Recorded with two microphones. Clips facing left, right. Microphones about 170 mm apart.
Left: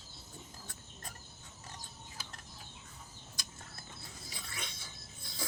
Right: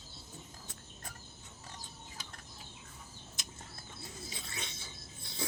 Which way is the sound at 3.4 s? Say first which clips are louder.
Even; 25° right (ahead or behind).